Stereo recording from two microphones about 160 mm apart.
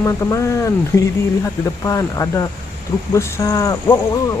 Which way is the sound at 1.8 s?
20° left (ahead or behind).